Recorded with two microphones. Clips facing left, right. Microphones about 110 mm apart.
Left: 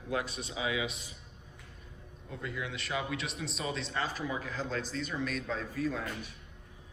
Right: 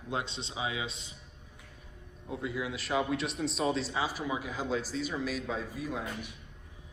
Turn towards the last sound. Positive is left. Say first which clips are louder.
# left 2 dB
turn(degrees=-15)  # may be behind; listen again after turning